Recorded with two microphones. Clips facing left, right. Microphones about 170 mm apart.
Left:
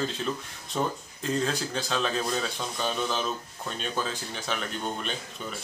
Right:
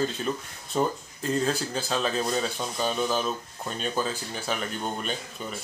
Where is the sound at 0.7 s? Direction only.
5° right (ahead or behind).